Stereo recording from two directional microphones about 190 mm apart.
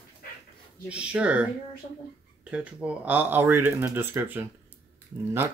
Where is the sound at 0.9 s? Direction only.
5° right (ahead or behind).